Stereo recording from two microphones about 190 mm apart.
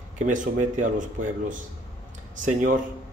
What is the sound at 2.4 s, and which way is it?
Speech, 40° right (ahead or behind).